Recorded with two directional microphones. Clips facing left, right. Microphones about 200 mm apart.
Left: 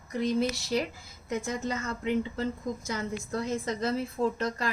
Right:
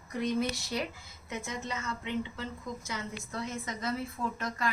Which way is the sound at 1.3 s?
40° left (ahead or behind).